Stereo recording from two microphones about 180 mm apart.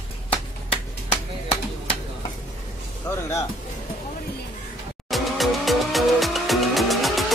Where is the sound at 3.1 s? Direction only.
20° left (ahead or behind).